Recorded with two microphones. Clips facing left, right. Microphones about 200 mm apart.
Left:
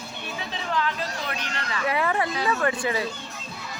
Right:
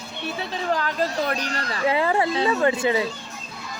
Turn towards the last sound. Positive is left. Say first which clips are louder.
# right 5 dB
turn(degrees=-25)  # may be behind; listen again after turning